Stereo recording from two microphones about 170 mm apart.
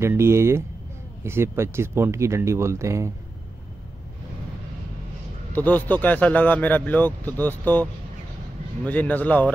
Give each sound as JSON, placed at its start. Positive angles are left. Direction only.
{"t": 0.0, "sound": "speech", "side_deg": -15}
{"t": 5.5, "sound": "a man's voice", "side_deg": 10}